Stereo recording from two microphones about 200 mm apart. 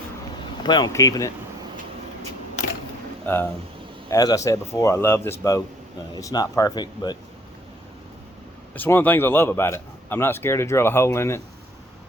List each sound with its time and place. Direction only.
0.6 s speech: 20° left (ahead or behind)
4.1 s a man's voice: 15° left (ahead or behind)
8.7 s a man's voice: 10° left (ahead or behind)